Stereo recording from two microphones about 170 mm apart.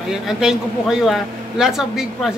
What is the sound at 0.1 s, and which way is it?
Speech, 5° right (ahead or behind).